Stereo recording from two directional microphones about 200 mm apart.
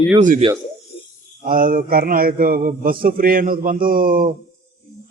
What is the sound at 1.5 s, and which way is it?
A man's voice, 45° right (ahead or behind).